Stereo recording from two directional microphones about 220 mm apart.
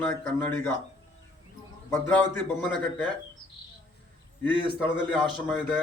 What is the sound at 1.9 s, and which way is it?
Speech, 10° left (ahead or behind).